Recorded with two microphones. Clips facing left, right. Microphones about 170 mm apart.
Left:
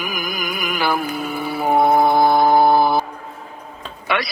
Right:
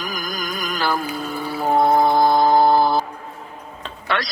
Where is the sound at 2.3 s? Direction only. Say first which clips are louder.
Left 1 dB; 60° left (ahead or behind).